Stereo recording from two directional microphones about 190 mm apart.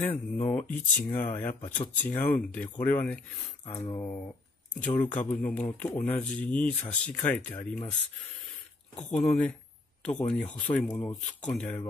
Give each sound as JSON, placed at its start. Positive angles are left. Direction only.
{"t": 0.0, "sound": "speech", "side_deg": 5}
{"t": 4.7, "sound": "speech", "side_deg": 10}
{"t": 8.9, "sound": "speech", "side_deg": 5}